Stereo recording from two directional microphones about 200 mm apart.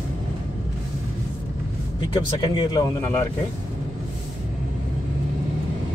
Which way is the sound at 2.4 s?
20° left (ahead or behind).